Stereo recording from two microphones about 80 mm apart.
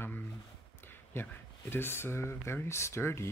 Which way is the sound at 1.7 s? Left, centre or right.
Left.